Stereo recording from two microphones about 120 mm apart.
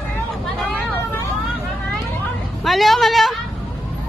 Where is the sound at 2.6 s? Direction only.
Centre (ahead or behind).